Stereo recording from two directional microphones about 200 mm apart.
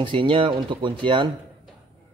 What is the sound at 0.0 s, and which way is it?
A man's voice, 25° right (ahead or behind).